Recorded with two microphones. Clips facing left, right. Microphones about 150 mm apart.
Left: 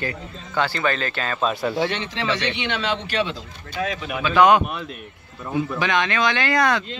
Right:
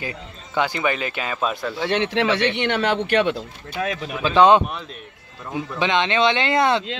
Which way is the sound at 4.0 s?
30° right (ahead or behind).